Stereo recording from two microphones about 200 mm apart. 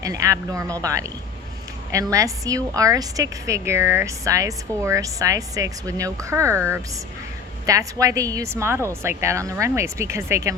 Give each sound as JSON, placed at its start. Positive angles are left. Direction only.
{"t": 0.0, "sound": "a woman's voice", "side_deg": -15}